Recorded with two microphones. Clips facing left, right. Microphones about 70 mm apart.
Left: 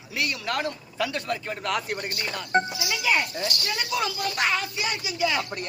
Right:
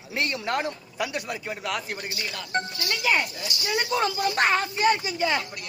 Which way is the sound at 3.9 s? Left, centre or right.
Right.